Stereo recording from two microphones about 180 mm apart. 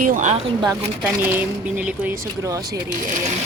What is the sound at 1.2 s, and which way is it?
Speech, 10° right (ahead or behind).